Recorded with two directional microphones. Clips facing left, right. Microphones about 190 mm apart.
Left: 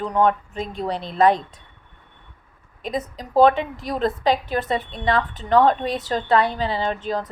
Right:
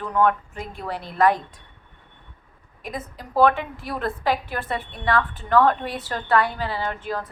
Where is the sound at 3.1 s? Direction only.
20° left (ahead or behind).